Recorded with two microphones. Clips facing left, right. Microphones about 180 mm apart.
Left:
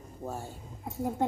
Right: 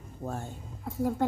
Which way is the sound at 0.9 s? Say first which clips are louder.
Right 2 dB; 25° left (ahead or behind).